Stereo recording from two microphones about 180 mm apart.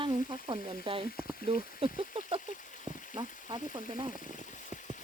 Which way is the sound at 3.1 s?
25° right (ahead or behind).